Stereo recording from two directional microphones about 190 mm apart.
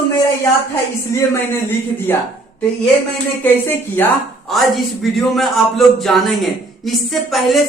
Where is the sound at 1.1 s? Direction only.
15° left (ahead or behind).